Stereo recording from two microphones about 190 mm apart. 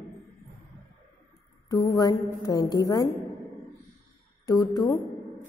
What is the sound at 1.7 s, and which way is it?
A woman's voice, 20° left (ahead or behind).